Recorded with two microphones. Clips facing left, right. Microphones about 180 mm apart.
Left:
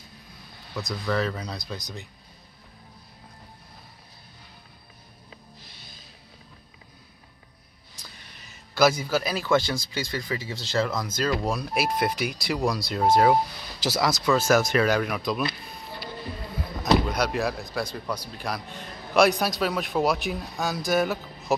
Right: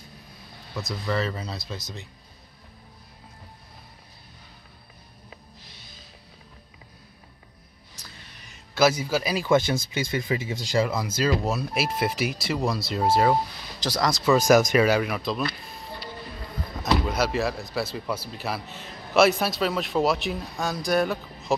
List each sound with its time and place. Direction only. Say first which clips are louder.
0.7 s speech: left 1 dB; centre (ahead or behind)
8.7 s speech: even; 5° right (ahead or behind)
14.3 s speech: right 4 dB; 15° right (ahead or behind)
16.8 s speech: left 1 dB; 5° right (ahead or behind)